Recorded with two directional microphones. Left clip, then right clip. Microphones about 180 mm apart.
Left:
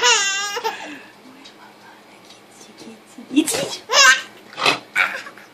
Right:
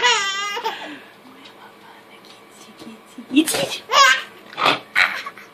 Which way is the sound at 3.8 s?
10° left (ahead or behind).